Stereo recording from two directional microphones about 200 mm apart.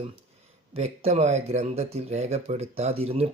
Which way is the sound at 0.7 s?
30° right (ahead or behind).